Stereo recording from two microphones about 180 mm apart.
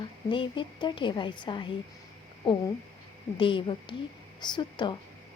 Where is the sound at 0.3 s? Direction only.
25° left (ahead or behind).